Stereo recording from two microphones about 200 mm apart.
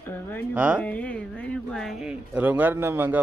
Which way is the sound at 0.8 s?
5° left (ahead or behind).